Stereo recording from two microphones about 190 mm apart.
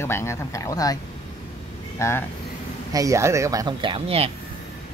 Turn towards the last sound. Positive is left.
turn(degrees=-30)  # may be behind; listen again after turning